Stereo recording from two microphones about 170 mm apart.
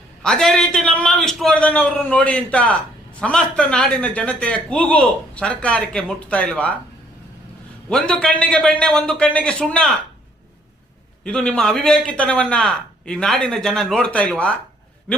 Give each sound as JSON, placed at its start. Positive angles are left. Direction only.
{"t": 0.2, "sound": "a man's voice", "side_deg": 5}
{"t": 7.9, "sound": "a man's voice", "side_deg": 5}
{"t": 11.2, "sound": "a man's voice", "side_deg": 5}